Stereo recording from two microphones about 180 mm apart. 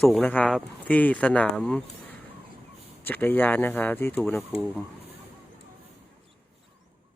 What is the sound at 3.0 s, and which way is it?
Speech, 10° left (ahead or behind).